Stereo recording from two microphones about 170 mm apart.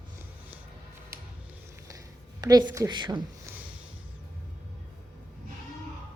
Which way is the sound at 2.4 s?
25° right (ahead or behind).